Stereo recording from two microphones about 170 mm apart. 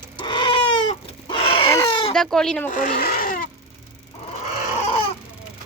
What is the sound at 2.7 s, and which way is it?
Speech, 50° left (ahead or behind).